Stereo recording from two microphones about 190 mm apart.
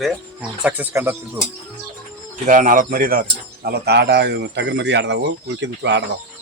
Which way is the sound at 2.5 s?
45° right (ahead or behind).